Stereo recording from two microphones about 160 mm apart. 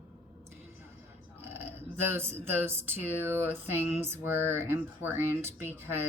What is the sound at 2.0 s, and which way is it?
Speech, 15° right (ahead or behind).